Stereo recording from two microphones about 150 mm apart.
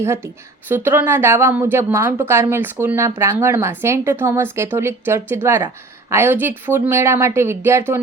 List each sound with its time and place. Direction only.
0.0 s speech: 15° right (ahead or behind)